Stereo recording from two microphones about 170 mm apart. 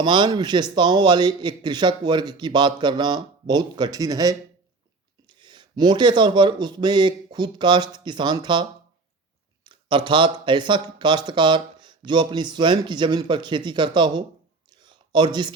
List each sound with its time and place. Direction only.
0.0 s speech: 25° right (ahead or behind)
9.6 s speech: 30° right (ahead or behind)
14.7 s a sound: 25° right (ahead or behind)